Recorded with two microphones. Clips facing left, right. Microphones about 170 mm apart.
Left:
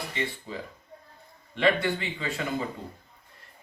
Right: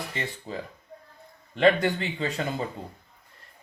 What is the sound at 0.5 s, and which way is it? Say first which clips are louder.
Speech: right 2 dB; 45° right (ahead or behind).